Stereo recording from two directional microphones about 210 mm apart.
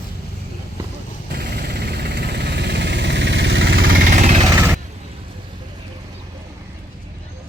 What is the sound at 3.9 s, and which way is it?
Vehicle, 35° right (ahead or behind).